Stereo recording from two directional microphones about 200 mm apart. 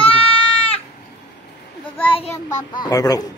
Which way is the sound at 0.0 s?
30° left (ahead or behind).